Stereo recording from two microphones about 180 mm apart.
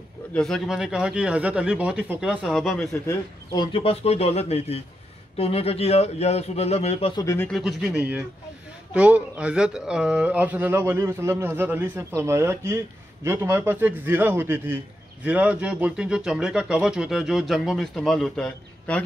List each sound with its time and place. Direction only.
0.3 s speech: centre (ahead or behind)
3.5 s a man's voice: 25° left (ahead or behind)
7.2 s speech: 15° left (ahead or behind)
7.4 s speech: centre (ahead or behind)